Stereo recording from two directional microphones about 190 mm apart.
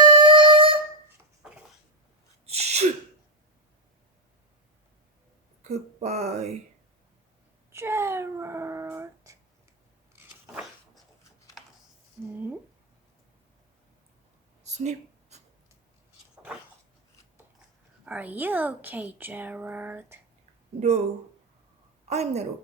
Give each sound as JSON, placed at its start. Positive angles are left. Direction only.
{"t": 0.0, "sound": "music", "side_deg": -25}
{"t": 2.5, "sound": "sneeze", "side_deg": -35}
{"t": 5.6, "sound": "speech", "side_deg": -35}
{"t": 7.7, "sound": "a sound", "side_deg": -15}
{"t": 12.2, "sound": "speech", "side_deg": -10}
{"t": 14.6, "sound": "a sound", "side_deg": -35}
{"t": 16.3, "sound": "a sound", "side_deg": -5}
{"t": 18.0, "sound": "speech", "side_deg": -10}
{"t": 22.1, "sound": "a woman's voice", "side_deg": -35}